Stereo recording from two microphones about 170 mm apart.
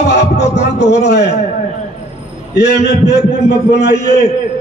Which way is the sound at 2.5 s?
80° left.